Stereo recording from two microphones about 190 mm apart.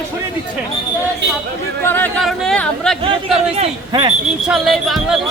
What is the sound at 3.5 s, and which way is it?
Speech, 30° right (ahead or behind).